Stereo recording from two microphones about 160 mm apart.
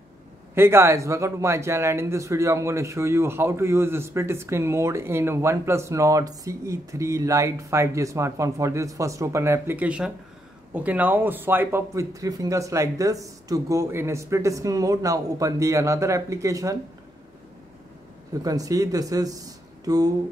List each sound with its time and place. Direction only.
0.6 s speech: 15° right (ahead or behind)
18.4 s speech: 20° right (ahead or behind)